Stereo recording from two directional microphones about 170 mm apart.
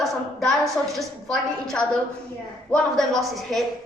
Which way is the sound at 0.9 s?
5° left (ahead or behind).